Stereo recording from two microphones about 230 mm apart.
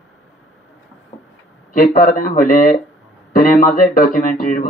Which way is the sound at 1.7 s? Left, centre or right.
Left.